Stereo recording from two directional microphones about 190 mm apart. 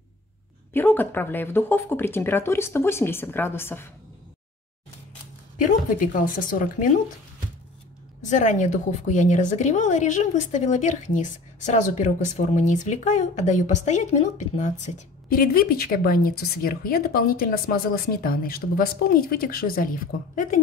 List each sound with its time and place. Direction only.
0.7 s speech: 10° left (ahead or behind)
5.6 s a woman's voice: 45° left (ahead or behind)
8.2 s a woman's voice: 40° left (ahead or behind)